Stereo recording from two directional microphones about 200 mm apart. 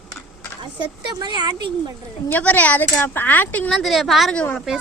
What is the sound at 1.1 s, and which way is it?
Speech, 20° right (ahead or behind).